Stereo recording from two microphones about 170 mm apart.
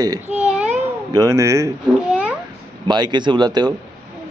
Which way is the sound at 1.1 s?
20° right (ahead or behind).